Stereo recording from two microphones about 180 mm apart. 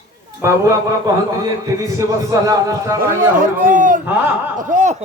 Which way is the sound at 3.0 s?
50° right (ahead or behind).